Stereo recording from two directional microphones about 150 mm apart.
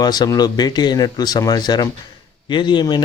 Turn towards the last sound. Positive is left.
turn(degrees=30)  # may be behind; listen again after turning